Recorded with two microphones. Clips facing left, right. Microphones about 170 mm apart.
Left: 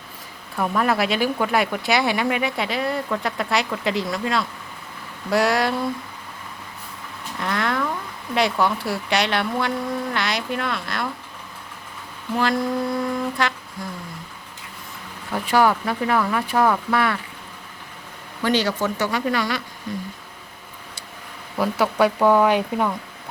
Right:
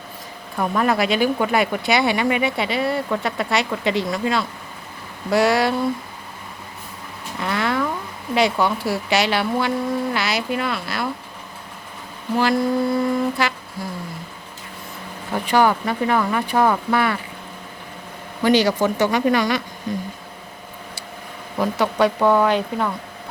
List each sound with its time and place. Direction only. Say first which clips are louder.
0.5 s speech: right 1 dB; centre (ahead or behind)
7.3 s a sound: right 2 dB; 5° right (ahead or behind)
8.4 s speech: right 2 dB; centre (ahead or behind)
12.4 s speech: right 3 dB; 5° right (ahead or behind)
15.4 s speech: right 1 dB; centre (ahead or behind)
18.4 s speech: right 4 dB; 15° right (ahead or behind)
21.6 s speech: right 1 dB; 5° left (ahead or behind)